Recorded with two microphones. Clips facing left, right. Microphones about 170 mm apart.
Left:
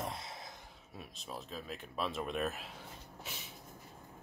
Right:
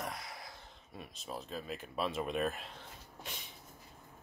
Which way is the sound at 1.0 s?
Centre (ahead or behind).